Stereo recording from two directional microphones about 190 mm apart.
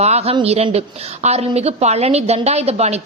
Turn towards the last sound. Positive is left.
turn(degrees=-35)  # may be behind; listen again after turning